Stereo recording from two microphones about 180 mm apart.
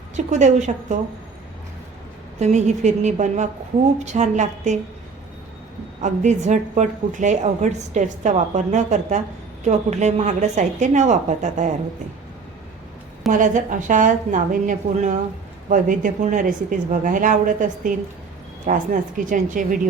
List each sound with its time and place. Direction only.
0.3 s a woman's voice: 40° right (ahead or behind)
2.4 s a woman's voice: 40° right (ahead or behind)
6.0 s a woman's voice: 40° right (ahead or behind)
13.3 s speech: 45° right (ahead or behind)